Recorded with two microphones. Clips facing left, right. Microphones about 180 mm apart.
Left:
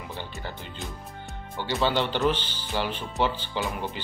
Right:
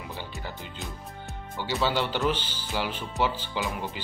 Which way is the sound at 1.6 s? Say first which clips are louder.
Left 2 dB; 10° right (ahead or behind).